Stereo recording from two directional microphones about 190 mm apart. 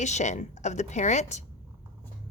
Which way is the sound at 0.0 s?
40° left (ahead or behind).